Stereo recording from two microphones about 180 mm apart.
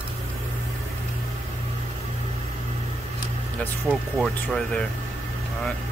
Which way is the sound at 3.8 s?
5° right (ahead or behind).